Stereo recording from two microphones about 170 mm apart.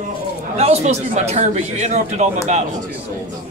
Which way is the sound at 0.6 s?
40° right (ahead or behind).